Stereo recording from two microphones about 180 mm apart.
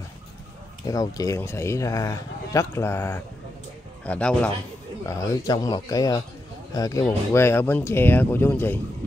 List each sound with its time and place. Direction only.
0.8 s speech: 20° left (ahead or behind)
5.0 s speech: 20° left (ahead or behind)